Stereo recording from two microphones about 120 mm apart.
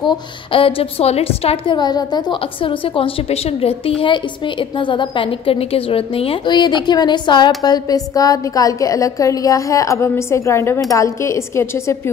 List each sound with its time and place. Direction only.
0.0 s a woman's voice: 45° left (ahead or behind)
1.8 s a woman's voice: 35° left (ahead or behind)